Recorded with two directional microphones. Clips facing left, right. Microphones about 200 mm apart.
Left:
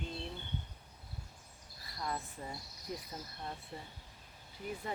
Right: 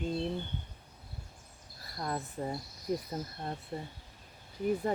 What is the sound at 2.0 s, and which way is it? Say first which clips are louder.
Speech: right 6 dB; 45° right (ahead or behind).